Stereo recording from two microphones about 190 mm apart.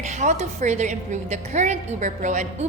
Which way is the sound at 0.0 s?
35° right (ahead or behind).